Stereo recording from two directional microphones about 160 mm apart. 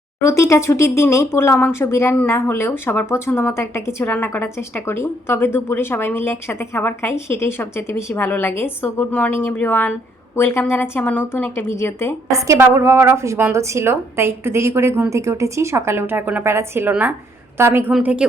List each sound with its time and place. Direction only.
0.2 s speech: 20° left (ahead or behind)
12.3 s a woman's voice: 20° right (ahead or behind)